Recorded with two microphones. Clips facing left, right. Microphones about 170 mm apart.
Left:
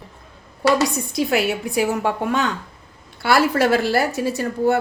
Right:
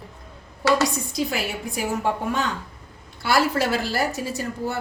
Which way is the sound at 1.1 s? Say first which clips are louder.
Left 6 dB; 65° left (ahead or behind).